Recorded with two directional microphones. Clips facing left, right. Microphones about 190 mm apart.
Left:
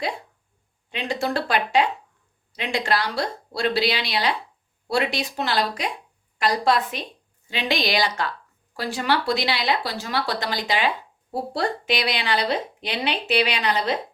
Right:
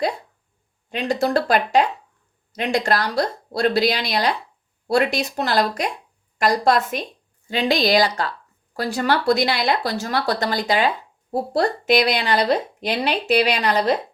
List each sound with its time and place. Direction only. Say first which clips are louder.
0.9 s a woman's voice: right 5 dB; 45° right (ahead or behind)